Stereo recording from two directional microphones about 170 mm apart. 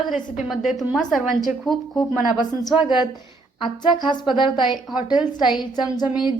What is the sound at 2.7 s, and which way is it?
Speech, 10° right (ahead or behind).